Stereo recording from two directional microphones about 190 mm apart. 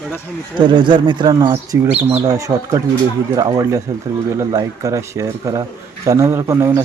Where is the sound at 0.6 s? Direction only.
25° right (ahead or behind).